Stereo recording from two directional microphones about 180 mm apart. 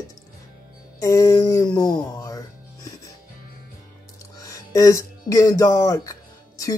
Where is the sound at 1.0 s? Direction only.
15° left (ahead or behind).